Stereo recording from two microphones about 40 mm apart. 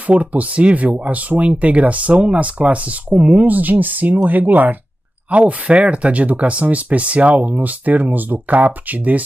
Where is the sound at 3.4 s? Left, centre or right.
Right.